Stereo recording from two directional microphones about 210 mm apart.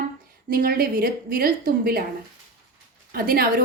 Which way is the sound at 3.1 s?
45° right (ahead or behind).